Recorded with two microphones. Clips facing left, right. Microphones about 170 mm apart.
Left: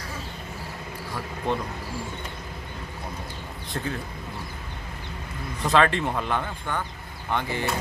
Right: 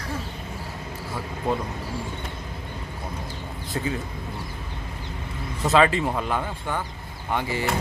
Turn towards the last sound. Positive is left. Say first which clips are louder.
# right 1 dB
turn(degrees=-5)  # may be behind; listen again after turning